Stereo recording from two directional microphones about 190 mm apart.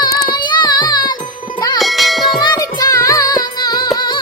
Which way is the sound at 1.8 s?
Centre (ahead or behind).